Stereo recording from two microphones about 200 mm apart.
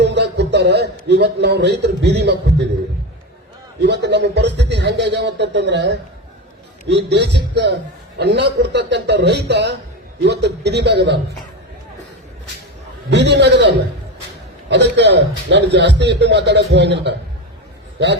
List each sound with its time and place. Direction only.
0.0 s a man's voice: 60° right (ahead or behind)
3.8 s speech: 60° right (ahead or behind)
13.1 s speech: 60° right (ahead or behind)